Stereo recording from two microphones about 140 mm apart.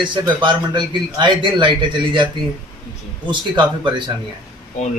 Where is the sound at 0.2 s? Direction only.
35° right (ahead or behind).